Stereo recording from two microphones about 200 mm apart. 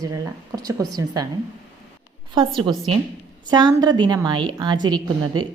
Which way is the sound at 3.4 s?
20° right (ahead or behind).